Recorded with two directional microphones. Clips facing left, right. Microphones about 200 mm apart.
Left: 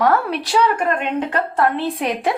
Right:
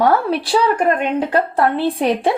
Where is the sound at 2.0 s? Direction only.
30° right (ahead or behind).